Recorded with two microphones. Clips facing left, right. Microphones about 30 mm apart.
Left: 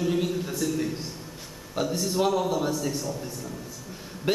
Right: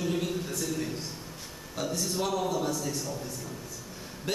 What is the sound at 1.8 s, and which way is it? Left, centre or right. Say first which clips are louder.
A man's voice: left 5 dB; left.